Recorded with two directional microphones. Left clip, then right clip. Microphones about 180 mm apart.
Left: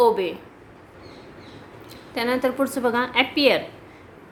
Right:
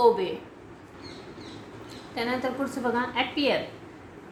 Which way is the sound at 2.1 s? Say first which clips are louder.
Left 7 dB; 45° left (ahead or behind).